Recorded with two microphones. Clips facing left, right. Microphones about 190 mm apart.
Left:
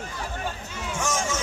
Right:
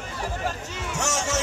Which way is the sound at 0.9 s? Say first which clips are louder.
Right 1 dB; 80° right.